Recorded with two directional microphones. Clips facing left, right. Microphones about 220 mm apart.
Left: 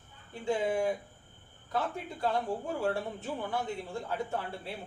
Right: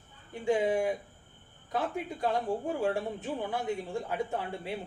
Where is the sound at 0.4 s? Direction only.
15° right (ahead or behind).